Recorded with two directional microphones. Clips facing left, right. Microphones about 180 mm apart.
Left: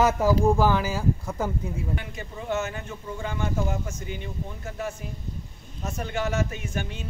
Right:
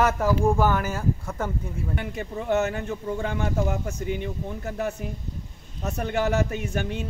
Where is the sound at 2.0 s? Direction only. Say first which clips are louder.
Right 5 dB; 65° right (ahead or behind).